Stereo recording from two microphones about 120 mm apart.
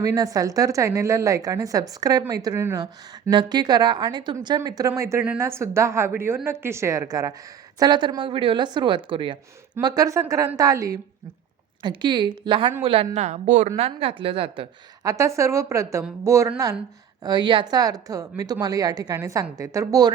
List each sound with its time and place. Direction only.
0.0 s a woman's voice: 30° right (ahead or behind)
7.8 s a woman's voice: 40° right (ahead or behind)
9.8 s a woman's voice: 30° right (ahead or behind)
11.8 s a woman's voice: 40° right (ahead or behind)
13.1 s a woman's voice: 75° right (ahead or behind); by 14.7 s 50° right (ahead or behind)
15.0 s a woman's voice: 25° right (ahead or behind)
17.2 s a woman's voice: 40° right (ahead or behind)